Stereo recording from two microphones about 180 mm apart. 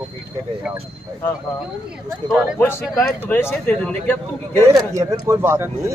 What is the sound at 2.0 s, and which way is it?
Speech, 10° right (ahead or behind).